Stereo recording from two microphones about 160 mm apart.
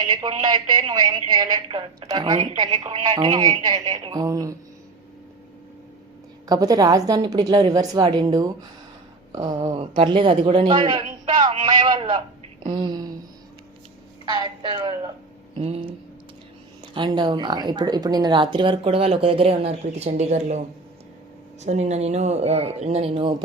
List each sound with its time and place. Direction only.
0.1 s a woman's voice: 30° right (ahead or behind)
6.5 s a woman's voice: 25° right (ahead or behind)
12.6 s a sound: 30° right (ahead or behind)
14.3 s a woman's voice: 30° right (ahead or behind); by 20.6 s 45° right (ahead or behind)
21.6 s speech: 45° right (ahead or behind)